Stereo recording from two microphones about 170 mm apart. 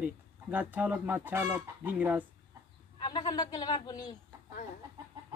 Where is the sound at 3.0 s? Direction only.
25° left (ahead or behind).